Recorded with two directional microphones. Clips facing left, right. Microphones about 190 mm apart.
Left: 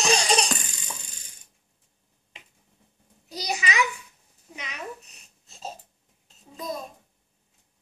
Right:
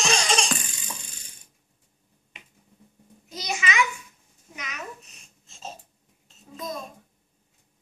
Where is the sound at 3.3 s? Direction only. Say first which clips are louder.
Even; 35° left (ahead or behind).